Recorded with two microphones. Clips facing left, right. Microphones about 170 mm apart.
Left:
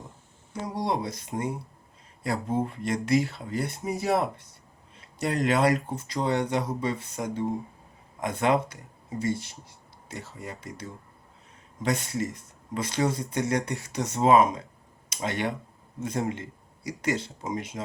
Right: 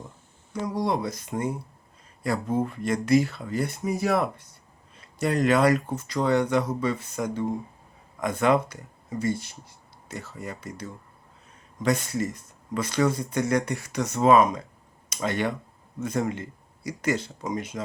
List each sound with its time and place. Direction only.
0.6 s speech: 25° left (ahead or behind)
11.8 s speech: 25° left (ahead or behind)
16.0 s speech: 25° left (ahead or behind)